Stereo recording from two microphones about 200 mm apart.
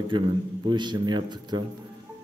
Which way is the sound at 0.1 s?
25° right (ahead or behind).